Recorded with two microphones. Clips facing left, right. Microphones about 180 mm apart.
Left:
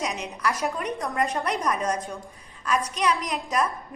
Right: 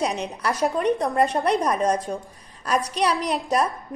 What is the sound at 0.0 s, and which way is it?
A woman's voice, 35° right (ahead or behind).